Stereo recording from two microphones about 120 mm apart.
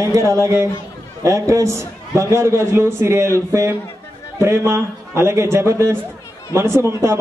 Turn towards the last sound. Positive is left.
turn(degrees=-20)  # may be behind; listen again after turning